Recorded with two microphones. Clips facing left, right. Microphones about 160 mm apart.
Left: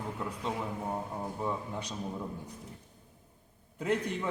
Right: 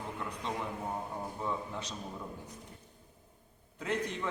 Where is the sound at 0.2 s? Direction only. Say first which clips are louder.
Left 1 dB; 5° left (ahead or behind).